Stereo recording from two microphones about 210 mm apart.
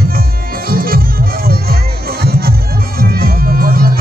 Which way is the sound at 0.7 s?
45° right (ahead or behind).